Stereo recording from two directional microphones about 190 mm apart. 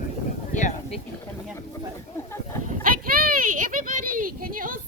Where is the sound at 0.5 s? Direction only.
40° left (ahead or behind).